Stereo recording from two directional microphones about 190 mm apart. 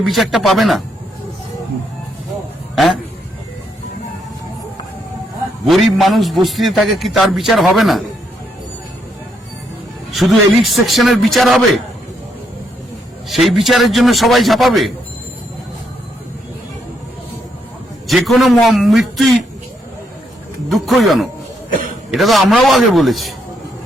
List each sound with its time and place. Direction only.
0.0 s a man's voice: centre (ahead or behind)
5.6 s a man's voice: centre (ahead or behind)
10.1 s a man's voice: centre (ahead or behind)
13.2 s a man's voice: centre (ahead or behind)
18.1 s a man's voice: centre (ahead or behind)
20.7 s a man's voice: centre (ahead or behind)
21.7 s cough: 45° right (ahead or behind)
22.1 s a man's voice: centre (ahead or behind)